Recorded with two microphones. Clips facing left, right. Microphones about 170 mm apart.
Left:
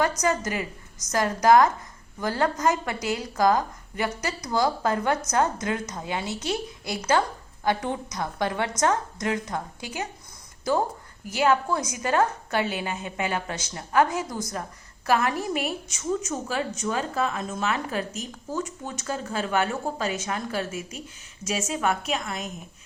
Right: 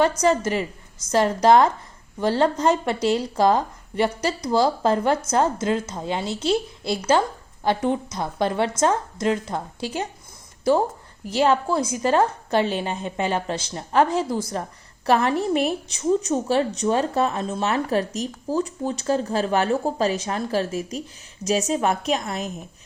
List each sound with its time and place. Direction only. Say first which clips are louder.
0.0 s a woman's voice: right 5 dB; 30° right (ahead or behind)
10.6 s a woman's voice: right 5 dB; 20° right (ahead or behind)